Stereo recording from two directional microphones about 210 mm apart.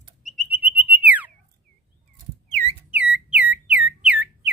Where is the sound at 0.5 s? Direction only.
5° right (ahead or behind).